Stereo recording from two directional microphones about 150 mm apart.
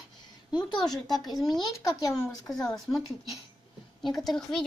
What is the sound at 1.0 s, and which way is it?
Speech, centre (ahead or behind).